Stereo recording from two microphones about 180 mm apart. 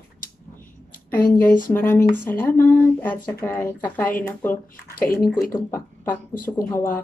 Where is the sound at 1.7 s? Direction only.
10° left (ahead or behind).